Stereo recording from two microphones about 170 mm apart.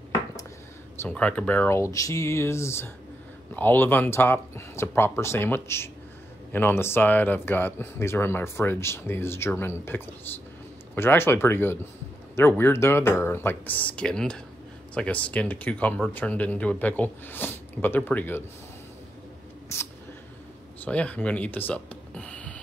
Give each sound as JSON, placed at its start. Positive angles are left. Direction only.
{"t": 1.0, "sound": "speech", "side_deg": 10}
{"t": 19.7, "sound": "speech", "side_deg": 15}